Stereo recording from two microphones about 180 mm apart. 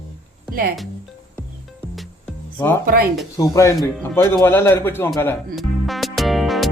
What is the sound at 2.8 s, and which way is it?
Speech, 55° right (ahead or behind).